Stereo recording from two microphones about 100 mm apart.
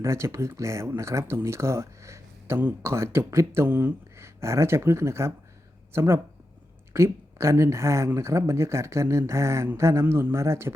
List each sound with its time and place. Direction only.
0.0 s speech: 30° right (ahead or behind)